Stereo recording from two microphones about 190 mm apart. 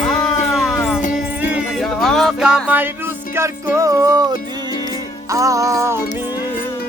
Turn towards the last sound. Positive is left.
turn(degrees=-15)  # may be behind; listen again after turning